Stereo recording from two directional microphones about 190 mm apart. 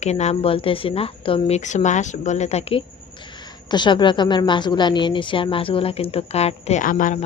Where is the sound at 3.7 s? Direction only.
25° left (ahead or behind); by 7.2 s 45° left (ahead or behind).